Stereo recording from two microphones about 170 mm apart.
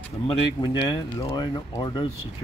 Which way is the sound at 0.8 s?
25° left (ahead or behind).